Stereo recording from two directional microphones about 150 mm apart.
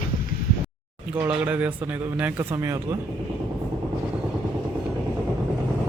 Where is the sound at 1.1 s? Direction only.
10° right (ahead or behind).